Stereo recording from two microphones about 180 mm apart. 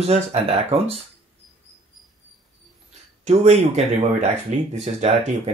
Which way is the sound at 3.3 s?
35° right (ahead or behind).